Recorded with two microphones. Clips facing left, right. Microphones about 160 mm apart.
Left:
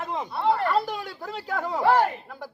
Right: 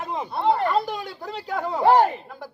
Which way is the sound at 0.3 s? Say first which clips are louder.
Right 2 dB; 25° right (ahead or behind).